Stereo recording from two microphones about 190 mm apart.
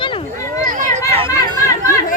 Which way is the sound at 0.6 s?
40° right (ahead or behind).